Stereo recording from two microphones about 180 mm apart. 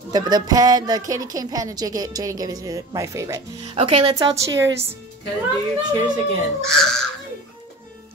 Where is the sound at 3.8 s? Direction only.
30° right (ahead or behind).